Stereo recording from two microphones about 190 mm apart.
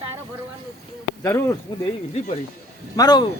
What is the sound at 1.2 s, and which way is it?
Speech, 15° left (ahead or behind).